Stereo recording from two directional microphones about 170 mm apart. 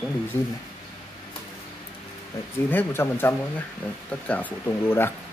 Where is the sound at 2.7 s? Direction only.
10° left (ahead or behind).